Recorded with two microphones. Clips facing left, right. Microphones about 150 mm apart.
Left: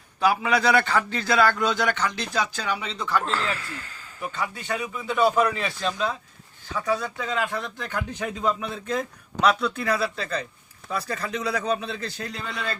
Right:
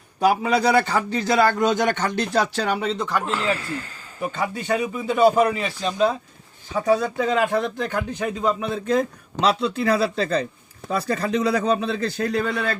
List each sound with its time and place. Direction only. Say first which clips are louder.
0.3 s a man's voice: right 3 dB; 40° right (ahead or behind)
1.3 s a man's voice: right 2 dB; 20° right (ahead or behind)
1.5 s speech: right 4 dB; 45° right (ahead or behind)
3.1 s a man's voice: right 2 dB; 15° right (ahead or behind); by 5.3 s 35° right (ahead or behind)
5.5 s speech: right 2 dB; 5° right (ahead or behind)
6.7 s a man's voice: right 7 dB; 35° right (ahead or behind); by 12.7 s 55° right (ahead or behind)